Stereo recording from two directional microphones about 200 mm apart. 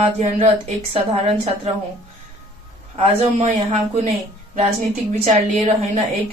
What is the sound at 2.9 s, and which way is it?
Speech, 30° right (ahead or behind).